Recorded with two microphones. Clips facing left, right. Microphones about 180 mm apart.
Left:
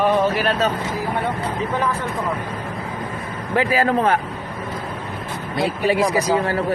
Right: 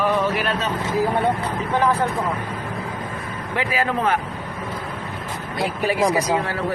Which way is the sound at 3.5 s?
35° left (ahead or behind).